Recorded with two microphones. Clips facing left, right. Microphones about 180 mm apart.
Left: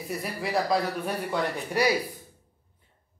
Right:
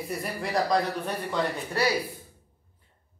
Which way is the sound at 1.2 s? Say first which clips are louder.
Even; 15° left (ahead or behind).